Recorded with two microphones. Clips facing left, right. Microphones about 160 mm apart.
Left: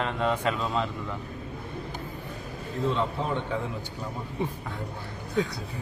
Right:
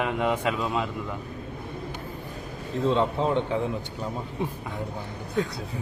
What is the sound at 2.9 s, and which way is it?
Speech, 20° right (ahead or behind).